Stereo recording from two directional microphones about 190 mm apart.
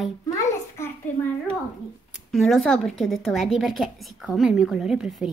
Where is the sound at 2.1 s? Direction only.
Centre (ahead or behind).